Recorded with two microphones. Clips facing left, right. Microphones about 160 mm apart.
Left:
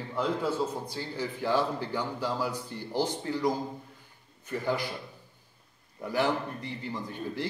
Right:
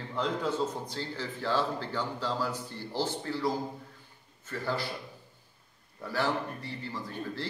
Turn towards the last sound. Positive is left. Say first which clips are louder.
# left 2 dB
turn(degrees=15)  # may be behind; listen again after turning